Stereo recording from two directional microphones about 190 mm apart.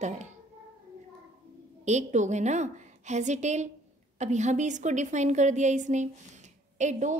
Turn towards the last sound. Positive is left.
turn(degrees=-40)  # may be behind; listen again after turning